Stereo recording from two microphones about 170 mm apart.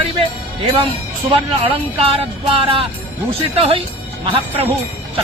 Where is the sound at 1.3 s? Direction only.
30° right (ahead or behind).